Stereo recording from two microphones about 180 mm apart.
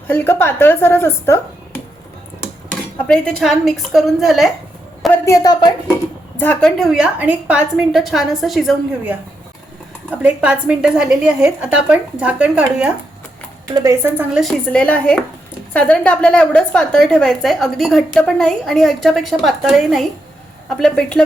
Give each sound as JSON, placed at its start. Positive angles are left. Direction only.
{"t": 0.1, "sound": "speech", "side_deg": 15}
{"t": 3.0, "sound": "a woman's voice", "side_deg": 5}
{"t": 5.1, "sound": "a woman's voice", "side_deg": 15}
{"t": 6.4, "sound": "a woman's voice", "side_deg": 5}
{"t": 14.3, "sound": "a woman's voice", "side_deg": 5}